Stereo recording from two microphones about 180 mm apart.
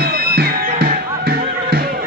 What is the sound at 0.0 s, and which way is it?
Music, 55° right (ahead or behind).